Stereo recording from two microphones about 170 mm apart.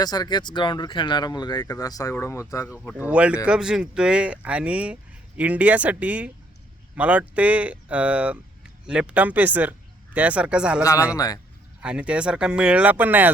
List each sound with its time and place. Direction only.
0.0 s speech: 25° left (ahead or behind)
3.0 s speech: 5° right (ahead or behind)
11.1 s speech: 20° left (ahead or behind)
11.8 s speech: 5° right (ahead or behind)